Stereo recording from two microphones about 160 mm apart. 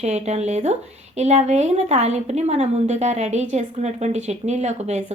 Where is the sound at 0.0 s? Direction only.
45° right (ahead or behind).